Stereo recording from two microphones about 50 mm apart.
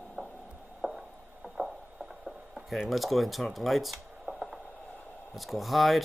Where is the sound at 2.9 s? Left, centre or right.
Centre.